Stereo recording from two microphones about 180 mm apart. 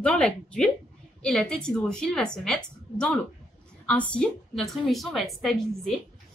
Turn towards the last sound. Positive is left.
turn(degrees=0)  # may be behind; listen again after turning